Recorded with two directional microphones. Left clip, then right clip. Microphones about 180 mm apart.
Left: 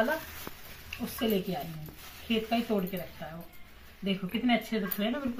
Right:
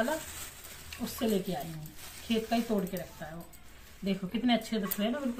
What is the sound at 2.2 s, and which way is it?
Speech, 25° right (ahead or behind).